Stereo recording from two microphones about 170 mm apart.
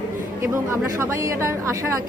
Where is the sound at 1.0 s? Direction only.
15° right (ahead or behind).